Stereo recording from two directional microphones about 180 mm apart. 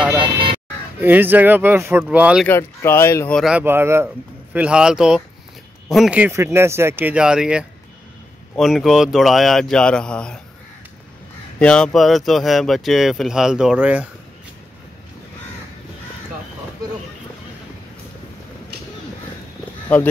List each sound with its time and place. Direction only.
0.1 s vehicle: 25° right (ahead or behind)
1.0 s speech: 10° right (ahead or behind)
2.4 s speech: 15° left (ahead or behind)
3.4 s speech: 10° right (ahead or behind)
11.6 s speech: 5° left (ahead or behind)